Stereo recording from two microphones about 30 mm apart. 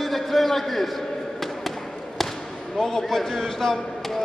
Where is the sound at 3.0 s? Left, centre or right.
Centre.